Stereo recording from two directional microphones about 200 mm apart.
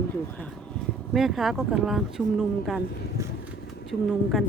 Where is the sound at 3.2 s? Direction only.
15° right (ahead or behind).